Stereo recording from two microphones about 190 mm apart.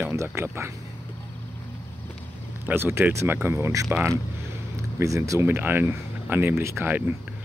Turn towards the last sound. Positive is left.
turn(degrees=-10)  # may be behind; listen again after turning